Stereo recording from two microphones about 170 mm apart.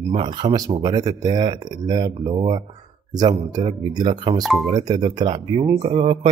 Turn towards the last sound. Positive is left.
turn(degrees=-35)  # may be behind; listen again after turning